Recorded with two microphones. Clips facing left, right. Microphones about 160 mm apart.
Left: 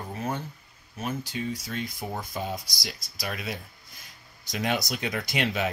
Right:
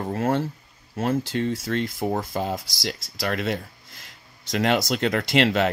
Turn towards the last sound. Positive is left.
turn(degrees=-75)  # may be behind; listen again after turning